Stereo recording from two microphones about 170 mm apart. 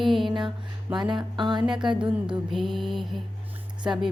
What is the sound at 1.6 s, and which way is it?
Music, 5° right (ahead or behind).